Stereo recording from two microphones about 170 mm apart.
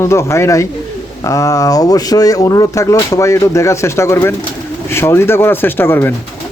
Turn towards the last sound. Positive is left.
turn(degrees=10)  # may be behind; listen again after turning